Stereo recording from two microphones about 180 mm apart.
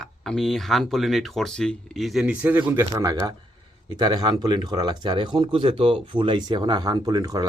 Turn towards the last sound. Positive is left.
turn(degrees=-20)  # may be behind; listen again after turning